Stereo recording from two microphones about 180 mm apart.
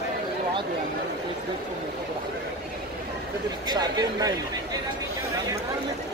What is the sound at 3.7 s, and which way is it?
Speech, 20° right (ahead or behind).